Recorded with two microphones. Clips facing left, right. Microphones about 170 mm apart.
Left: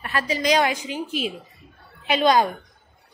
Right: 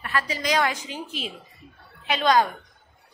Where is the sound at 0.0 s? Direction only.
20° left (ahead or behind).